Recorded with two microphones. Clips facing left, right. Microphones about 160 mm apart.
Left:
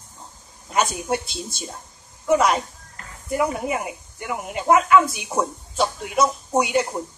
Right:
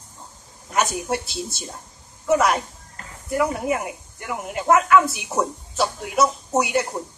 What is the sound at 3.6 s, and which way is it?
Speech, 5° left (ahead or behind).